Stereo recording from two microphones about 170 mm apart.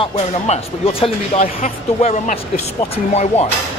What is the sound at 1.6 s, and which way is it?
Speech, 45° left (ahead or behind).